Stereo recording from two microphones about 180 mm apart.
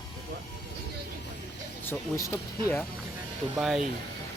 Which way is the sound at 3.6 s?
Centre (ahead or behind).